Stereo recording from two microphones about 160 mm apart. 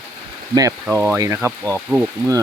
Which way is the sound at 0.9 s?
15° right (ahead or behind).